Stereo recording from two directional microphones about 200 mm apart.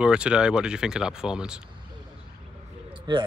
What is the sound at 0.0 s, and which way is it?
Speech, 5° right (ahead or behind).